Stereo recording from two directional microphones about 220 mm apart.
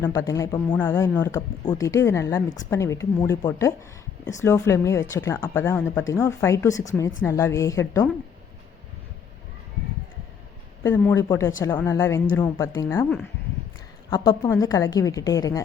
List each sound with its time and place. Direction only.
0.0 s speech: 15° left (ahead or behind)
10.8 s speech: 10° left (ahead or behind)
14.1 s speech: 15° left (ahead or behind)